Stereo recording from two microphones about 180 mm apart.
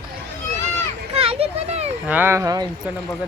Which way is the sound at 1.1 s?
35° right (ahead or behind).